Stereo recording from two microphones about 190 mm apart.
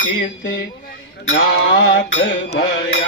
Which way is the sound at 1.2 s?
70° left (ahead or behind).